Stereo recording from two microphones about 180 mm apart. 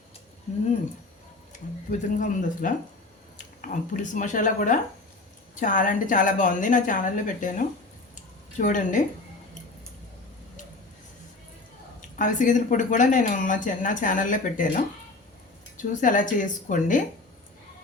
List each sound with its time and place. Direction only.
1.9 s speech: 50° left (ahead or behind)
12.1 s speech: 45° left (ahead or behind)
15.8 s speech: 45° left (ahead or behind)